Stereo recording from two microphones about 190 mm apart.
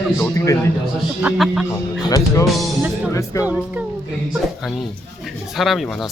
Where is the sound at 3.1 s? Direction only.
15° left (ahead or behind).